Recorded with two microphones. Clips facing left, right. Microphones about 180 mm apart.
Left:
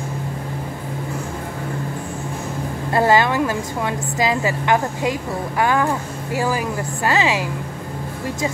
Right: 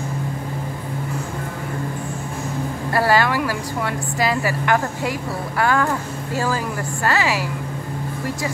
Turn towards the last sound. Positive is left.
turn(degrees=20)  # may be behind; listen again after turning